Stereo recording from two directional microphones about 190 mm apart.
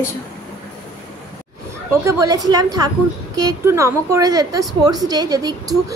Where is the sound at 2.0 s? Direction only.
15° right (ahead or behind).